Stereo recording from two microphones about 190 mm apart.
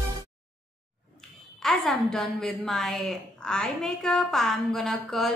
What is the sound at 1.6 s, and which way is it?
A woman's voice, centre (ahead or behind).